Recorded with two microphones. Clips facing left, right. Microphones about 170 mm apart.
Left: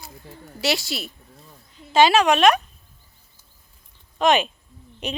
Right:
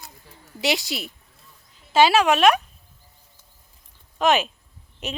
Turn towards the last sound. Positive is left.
turn(degrees=-5)  # may be behind; listen again after turning